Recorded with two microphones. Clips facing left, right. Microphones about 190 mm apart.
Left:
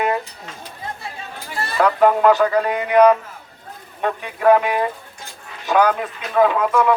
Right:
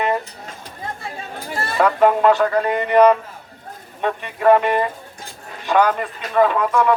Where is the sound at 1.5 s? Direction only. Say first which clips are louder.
Right 1 dB; 45° right (ahead or behind).